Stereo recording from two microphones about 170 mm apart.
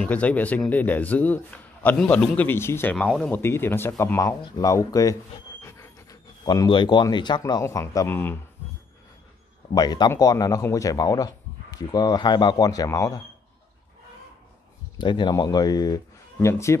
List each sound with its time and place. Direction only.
0.0 s a man's voice: 10° left (ahead or behind)
5.6 s squeal: 15° left (ahead or behind)
6.4 s speech: 25° left (ahead or behind)
9.8 s speech: 25° left (ahead or behind)
15.0 s speech: 25° left (ahead or behind)